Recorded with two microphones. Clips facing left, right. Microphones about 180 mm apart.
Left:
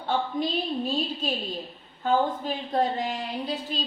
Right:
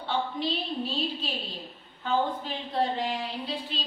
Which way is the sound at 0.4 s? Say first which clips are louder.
Left 3 dB; 45° left (ahead or behind).